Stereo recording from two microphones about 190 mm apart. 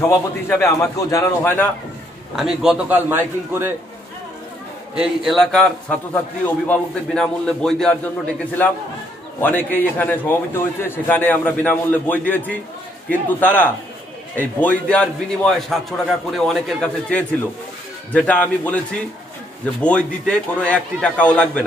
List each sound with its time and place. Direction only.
0.5 s a man's voice: 15° left (ahead or behind)
2.3 s a man's voice: 5° right (ahead or behind)
4.9 s a man's voice: 5° right (ahead or behind)
9.4 s a man's voice: 10° left (ahead or behind)
19.8 s a man's voice: 5° left (ahead or behind)